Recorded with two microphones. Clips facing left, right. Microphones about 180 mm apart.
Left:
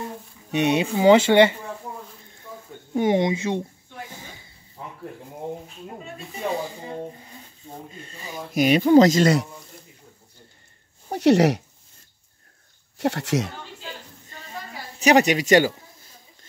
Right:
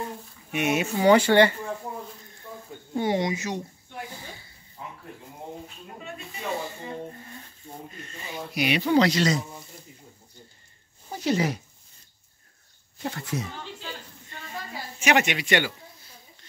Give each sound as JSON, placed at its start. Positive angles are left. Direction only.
{"t": 0.5, "sound": "speech", "side_deg": 30}
{"t": 2.9, "sound": "speech", "side_deg": 20}
{"t": 4.2, "sound": "a sound", "side_deg": 20}
{"t": 8.0, "sound": "speech", "side_deg": 35}
{"t": 8.5, "sound": "speech", "side_deg": 45}
{"t": 11.1, "sound": "speech", "side_deg": 70}
{"t": 12.9, "sound": "speech", "side_deg": 75}
{"t": 15.0, "sound": "speech", "side_deg": 35}